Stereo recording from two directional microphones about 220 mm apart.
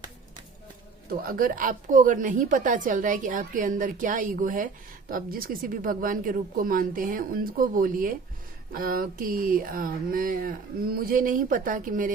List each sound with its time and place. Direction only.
1.2 s a woman's voice: 40° right (ahead or behind)